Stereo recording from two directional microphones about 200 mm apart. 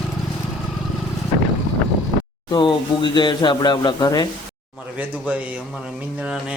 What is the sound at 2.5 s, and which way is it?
A man's voice, 25° left (ahead or behind).